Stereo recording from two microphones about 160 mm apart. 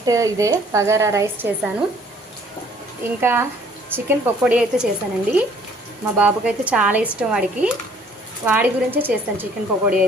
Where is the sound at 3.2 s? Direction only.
15° right (ahead or behind).